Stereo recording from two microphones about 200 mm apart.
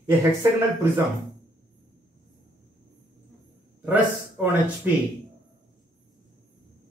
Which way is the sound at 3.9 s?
10° right (ahead or behind).